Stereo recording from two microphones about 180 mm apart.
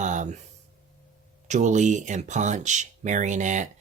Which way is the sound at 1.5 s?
40° right (ahead or behind).